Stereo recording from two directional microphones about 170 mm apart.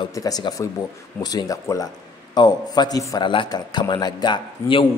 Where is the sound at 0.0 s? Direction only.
20° left (ahead or behind).